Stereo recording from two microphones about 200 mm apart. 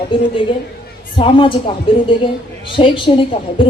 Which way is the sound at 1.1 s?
25° left (ahead or behind).